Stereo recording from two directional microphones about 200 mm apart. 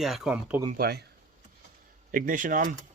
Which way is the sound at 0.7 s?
50° right (ahead or behind).